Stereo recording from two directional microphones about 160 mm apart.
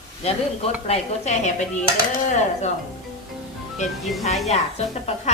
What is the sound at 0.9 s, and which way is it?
Speech, 40° left (ahead or behind).